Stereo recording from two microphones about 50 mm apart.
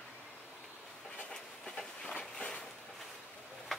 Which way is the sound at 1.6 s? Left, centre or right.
Centre.